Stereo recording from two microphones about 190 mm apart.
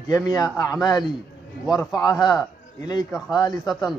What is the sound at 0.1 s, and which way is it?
Speech, 15° left (ahead or behind).